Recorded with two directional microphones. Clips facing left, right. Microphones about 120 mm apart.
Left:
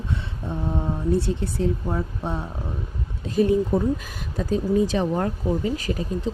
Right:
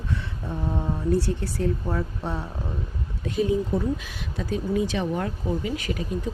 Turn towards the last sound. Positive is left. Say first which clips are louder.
# left 2 dB
turn(degrees=35)  # may be behind; listen again after turning